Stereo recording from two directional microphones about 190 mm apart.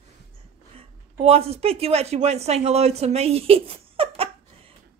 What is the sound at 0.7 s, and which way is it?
A woman's voice, 30° right (ahead or behind).